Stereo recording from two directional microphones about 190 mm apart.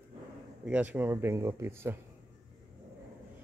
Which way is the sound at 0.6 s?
10° right (ahead or behind).